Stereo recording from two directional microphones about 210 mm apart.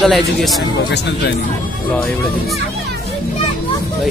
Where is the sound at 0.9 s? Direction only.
55° left (ahead or behind).